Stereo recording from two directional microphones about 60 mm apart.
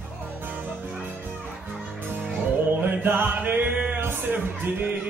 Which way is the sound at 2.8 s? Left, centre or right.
Right.